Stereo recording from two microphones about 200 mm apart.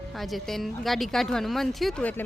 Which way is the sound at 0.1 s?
Centre (ahead or behind).